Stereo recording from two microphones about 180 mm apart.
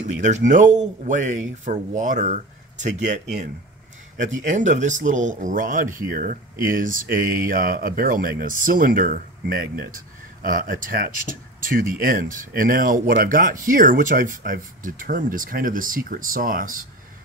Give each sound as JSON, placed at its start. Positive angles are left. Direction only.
{"t": 0.5, "sound": "speech", "side_deg": -45}
{"t": 4.5, "sound": "speech", "side_deg": -40}